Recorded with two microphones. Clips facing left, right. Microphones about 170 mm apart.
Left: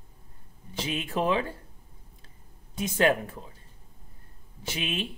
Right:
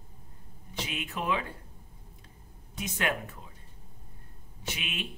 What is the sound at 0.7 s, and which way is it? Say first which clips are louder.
Speech: left 6 dB; 30° left (ahead or behind).